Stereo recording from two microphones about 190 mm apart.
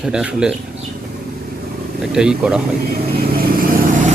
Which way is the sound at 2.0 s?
5° right (ahead or behind).